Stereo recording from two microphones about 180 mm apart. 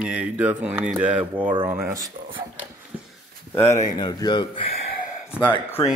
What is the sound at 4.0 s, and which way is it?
Speech, 25° left (ahead or behind).